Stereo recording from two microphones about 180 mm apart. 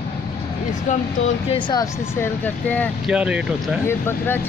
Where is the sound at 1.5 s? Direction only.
25° left (ahead or behind).